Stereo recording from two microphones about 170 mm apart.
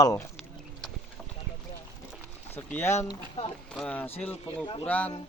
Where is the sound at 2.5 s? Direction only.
15° left (ahead or behind).